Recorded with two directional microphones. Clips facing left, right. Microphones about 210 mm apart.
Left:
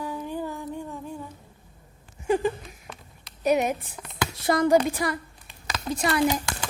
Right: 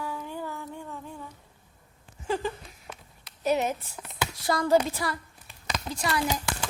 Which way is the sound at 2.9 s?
5° right (ahead or behind).